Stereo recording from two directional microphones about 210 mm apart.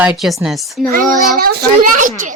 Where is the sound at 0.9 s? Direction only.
45° right (ahead or behind).